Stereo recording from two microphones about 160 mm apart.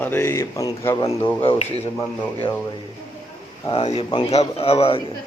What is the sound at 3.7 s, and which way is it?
Speech, 40° left (ahead or behind).